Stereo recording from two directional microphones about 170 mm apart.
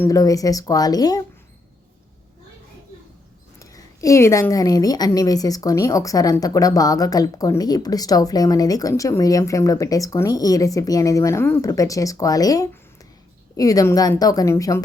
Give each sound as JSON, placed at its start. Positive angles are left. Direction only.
{"t": 0.0, "sound": "a woman's voice", "side_deg": 20}
{"t": 3.6, "sound": "a woman's voice", "side_deg": 20}